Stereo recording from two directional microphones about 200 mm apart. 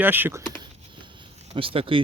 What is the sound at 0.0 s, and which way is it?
Speech, 10° right (ahead or behind).